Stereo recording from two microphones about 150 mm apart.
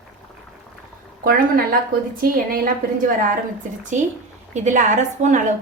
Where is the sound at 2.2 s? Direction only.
75° right (ahead or behind).